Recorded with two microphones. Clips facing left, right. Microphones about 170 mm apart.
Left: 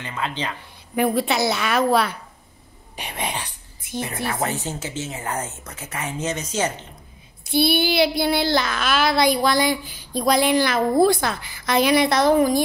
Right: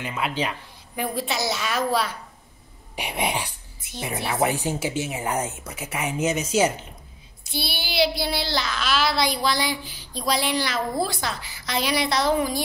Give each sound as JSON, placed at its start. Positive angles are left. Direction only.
{"t": 0.0, "sound": "speech", "side_deg": -10}
{"t": 0.9, "sound": "a woman's voice", "side_deg": 60}
{"t": 3.0, "sound": "speech", "side_deg": -10}
{"t": 7.4, "sound": "a child's voice", "side_deg": 55}